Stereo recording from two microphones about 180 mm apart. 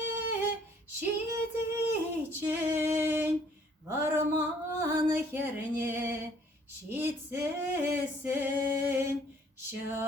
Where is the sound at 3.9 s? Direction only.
15° right (ahead or behind).